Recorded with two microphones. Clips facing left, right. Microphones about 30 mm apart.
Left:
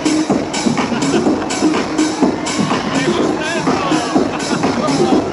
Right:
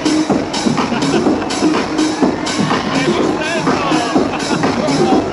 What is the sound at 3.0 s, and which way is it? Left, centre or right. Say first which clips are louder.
Music: right 1 dB; centre.